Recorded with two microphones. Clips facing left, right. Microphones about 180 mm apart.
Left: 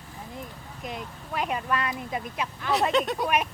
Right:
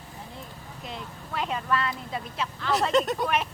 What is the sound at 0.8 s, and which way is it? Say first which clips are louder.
Speech: left 3 dB; 15° left (ahead or behind).